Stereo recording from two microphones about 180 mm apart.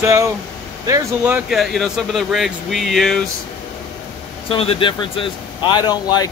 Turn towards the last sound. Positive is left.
turn(degrees=20)  # may be behind; listen again after turning